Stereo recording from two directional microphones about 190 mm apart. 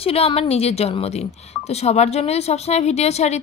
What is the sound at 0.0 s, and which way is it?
Speech, 30° left (ahead or behind).